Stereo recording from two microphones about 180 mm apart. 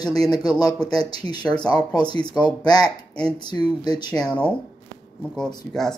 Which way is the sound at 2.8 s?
5° left (ahead or behind).